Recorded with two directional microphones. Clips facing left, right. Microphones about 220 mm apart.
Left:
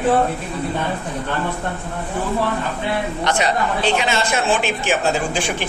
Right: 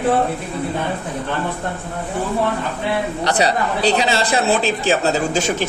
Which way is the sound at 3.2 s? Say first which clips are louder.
Right 1 dB; 35° right (ahead or behind).